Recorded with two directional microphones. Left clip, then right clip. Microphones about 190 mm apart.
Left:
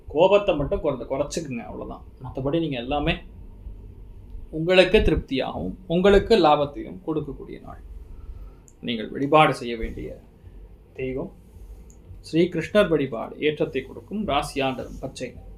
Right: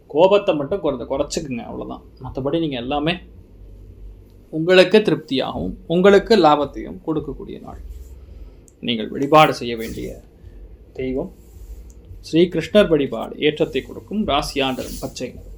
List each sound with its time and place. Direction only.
0.1 s speech: 35° right (ahead or behind)
4.6 s speech: 40° right (ahead or behind)
8.8 s speech: 30° right (ahead or behind)
12.2 s speech: 35° right (ahead or behind)